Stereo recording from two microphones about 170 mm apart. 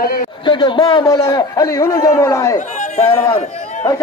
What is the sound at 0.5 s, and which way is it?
A man's voice, 30° left (ahead or behind).